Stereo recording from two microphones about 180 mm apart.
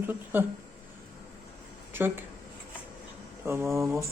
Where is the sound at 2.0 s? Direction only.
10° right (ahead or behind).